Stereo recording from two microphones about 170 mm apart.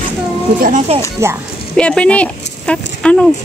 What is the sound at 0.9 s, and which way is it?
Speech, 35° right (ahead or behind).